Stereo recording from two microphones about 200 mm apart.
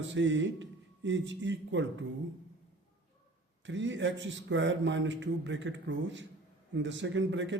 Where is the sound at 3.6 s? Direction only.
65° right (ahead or behind).